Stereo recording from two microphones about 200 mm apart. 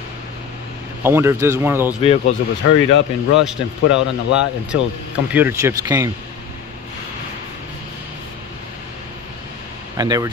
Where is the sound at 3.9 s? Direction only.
65° left (ahead or behind).